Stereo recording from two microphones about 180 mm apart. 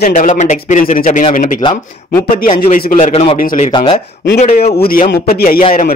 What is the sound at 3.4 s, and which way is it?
Speech, 50° left (ahead or behind).